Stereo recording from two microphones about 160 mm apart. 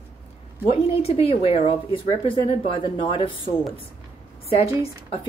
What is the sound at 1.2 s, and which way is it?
Speech, 35° left (ahead or behind).